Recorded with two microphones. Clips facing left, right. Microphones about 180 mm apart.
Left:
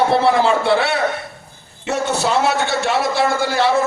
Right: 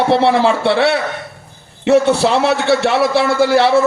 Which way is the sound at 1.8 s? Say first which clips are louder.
Right 8 dB; 60° right (ahead or behind).